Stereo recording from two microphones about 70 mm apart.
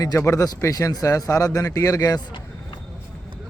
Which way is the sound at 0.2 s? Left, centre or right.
Left.